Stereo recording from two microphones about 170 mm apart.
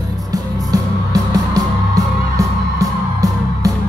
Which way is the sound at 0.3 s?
20° right (ahead or behind).